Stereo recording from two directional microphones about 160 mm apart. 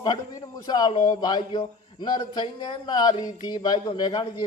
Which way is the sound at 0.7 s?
25° left (ahead or behind).